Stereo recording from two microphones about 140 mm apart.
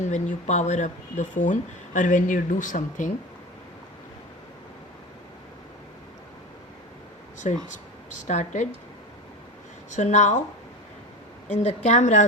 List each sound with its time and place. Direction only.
0.0 s speech: 60° left (ahead or behind)
7.3 s speech: 60° left (ahead or behind)
9.9 s speech: 60° left (ahead or behind)
11.5 s speech: 55° left (ahead or behind)